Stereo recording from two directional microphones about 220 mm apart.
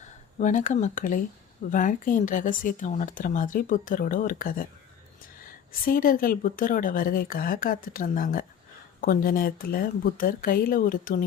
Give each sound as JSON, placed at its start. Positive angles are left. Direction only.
{"t": 0.3, "sound": "a woman's voice", "side_deg": 35}